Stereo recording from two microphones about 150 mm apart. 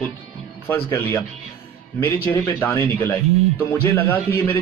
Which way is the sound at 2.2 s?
15° left (ahead or behind).